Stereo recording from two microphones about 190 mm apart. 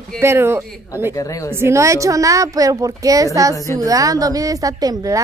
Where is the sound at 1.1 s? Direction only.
15° left (ahead or behind).